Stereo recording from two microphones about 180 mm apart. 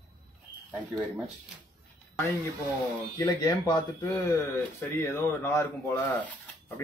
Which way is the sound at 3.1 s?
20° left (ahead or behind).